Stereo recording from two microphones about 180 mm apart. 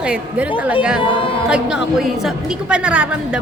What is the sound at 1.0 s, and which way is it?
Music, 30° left (ahead or behind).